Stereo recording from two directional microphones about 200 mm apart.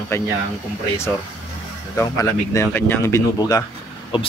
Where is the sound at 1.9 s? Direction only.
15° left (ahead or behind).